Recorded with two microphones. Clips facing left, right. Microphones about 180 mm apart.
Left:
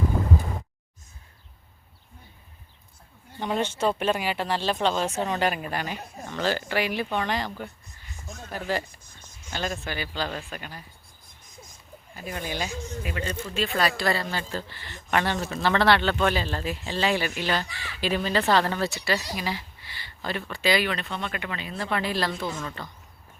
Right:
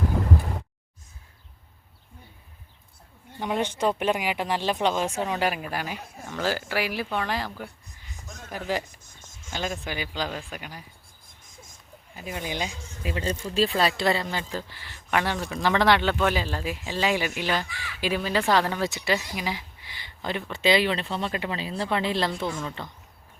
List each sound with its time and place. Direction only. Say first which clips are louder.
3.4 s speech: even; 15° right (ahead or behind)
8.4 s speech: even; 15° right (ahead or behind)
12.1 s speech: even; 15° right (ahead or behind)
13.1 s speech: right 5 dB; 30° right (ahead or behind)